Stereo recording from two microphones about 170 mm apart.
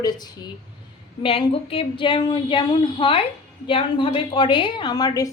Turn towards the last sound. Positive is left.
turn(degrees=20)  # may be behind; listen again after turning